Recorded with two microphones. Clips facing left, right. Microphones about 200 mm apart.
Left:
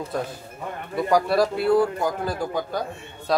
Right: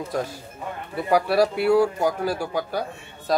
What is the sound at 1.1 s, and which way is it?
Speech, 10° right (ahead or behind).